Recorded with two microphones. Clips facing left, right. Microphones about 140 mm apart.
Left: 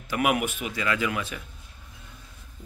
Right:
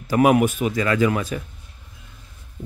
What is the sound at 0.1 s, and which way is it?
Speech, 35° right (ahead or behind).